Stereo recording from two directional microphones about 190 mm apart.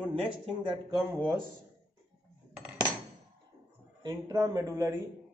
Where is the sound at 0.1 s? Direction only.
30° right (ahead or behind).